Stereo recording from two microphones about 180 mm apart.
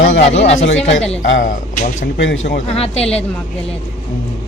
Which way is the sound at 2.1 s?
85° left.